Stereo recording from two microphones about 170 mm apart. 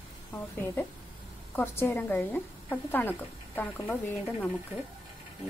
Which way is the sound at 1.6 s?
10° left (ahead or behind).